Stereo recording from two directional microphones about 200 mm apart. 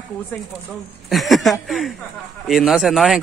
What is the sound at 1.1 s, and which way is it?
A man's voice, centre (ahead or behind).